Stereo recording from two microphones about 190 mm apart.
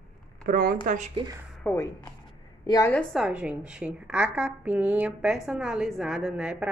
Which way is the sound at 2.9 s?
5° left (ahead or behind).